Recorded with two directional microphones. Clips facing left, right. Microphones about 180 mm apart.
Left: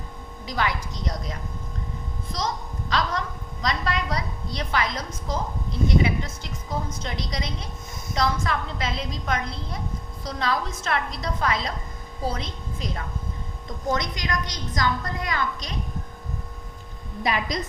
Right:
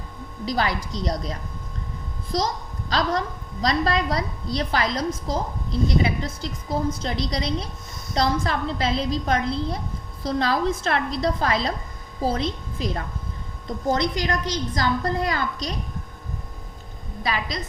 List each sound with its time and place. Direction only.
0.4 s a woman's voice: 35° right (ahead or behind)
2.9 s a woman's voice: 35° right (ahead or behind)
17.2 s a woman's voice: 20° left (ahead or behind)